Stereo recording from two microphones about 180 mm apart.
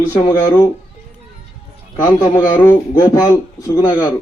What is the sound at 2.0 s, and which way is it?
Speech, 20° left (ahead or behind).